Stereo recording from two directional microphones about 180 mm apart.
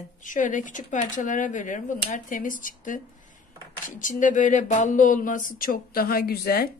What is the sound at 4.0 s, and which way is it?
Speech, 45° left (ahead or behind).